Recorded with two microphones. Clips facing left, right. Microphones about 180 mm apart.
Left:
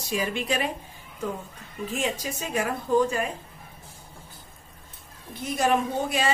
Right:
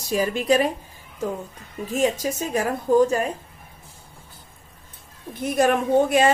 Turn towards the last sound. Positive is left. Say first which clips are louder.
# right 9 dB
turn(degrees=-55)  # may be behind; listen again after turning